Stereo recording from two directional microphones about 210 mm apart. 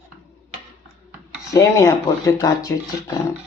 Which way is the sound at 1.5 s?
15° left (ahead or behind).